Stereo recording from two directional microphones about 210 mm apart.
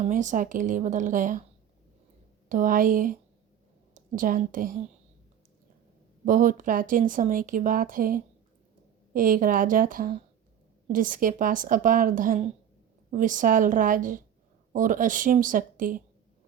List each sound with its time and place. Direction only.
0.0 s speech: 35° right (ahead or behind)
2.5 s a woman's voice: 40° right (ahead or behind)
6.2 s speech: 40° right (ahead or behind)